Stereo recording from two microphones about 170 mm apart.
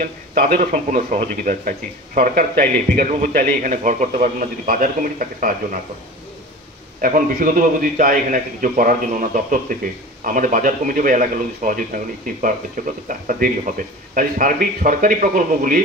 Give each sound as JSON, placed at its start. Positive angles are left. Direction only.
{"t": 0.0, "sound": "speech", "side_deg": -55}
{"t": 7.0, "sound": "speech", "side_deg": -55}